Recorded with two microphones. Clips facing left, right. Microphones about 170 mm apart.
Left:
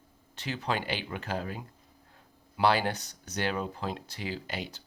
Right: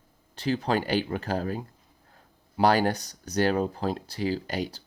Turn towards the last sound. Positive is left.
turn(degrees=-40)  # may be behind; listen again after turning